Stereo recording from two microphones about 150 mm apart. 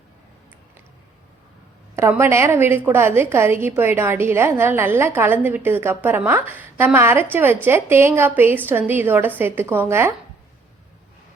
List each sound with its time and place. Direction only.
2.0 s a woman's voice: 15° right (ahead or behind)